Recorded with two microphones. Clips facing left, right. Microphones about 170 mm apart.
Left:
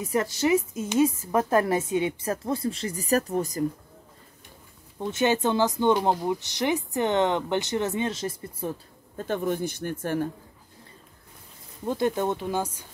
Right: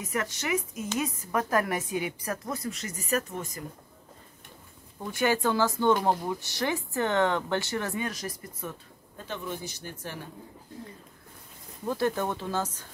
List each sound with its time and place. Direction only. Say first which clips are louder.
0.0 s speech: left 7 dB; 30° left (ahead or behind)
4.9 s speech: left 3 dB; 25° left (ahead or behind)
9.1 s speech: left 9 dB; 50° left (ahead or behind)
11.8 s speech: left 3 dB; 20° left (ahead or behind)